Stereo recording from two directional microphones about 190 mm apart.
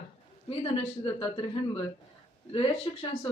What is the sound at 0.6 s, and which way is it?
Speech, 30° left (ahead or behind).